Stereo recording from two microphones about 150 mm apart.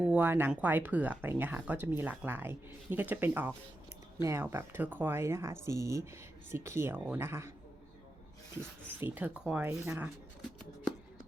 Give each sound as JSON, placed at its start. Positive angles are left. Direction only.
{"t": 0.0, "sound": "speech", "side_deg": -10}
{"t": 9.0, "sound": "speech", "side_deg": -15}